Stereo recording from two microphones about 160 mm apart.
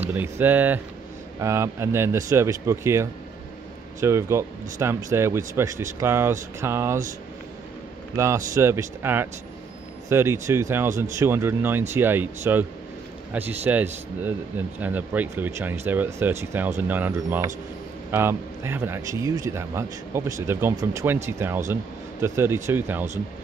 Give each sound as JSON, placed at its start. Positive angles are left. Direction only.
{"t": 0.1, "sound": "a man's voice", "side_deg": -10}
{"t": 8.2, "sound": "a man's voice", "side_deg": -20}